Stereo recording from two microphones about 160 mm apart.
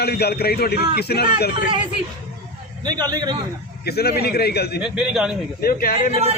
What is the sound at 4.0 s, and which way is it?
Speech, 80° left.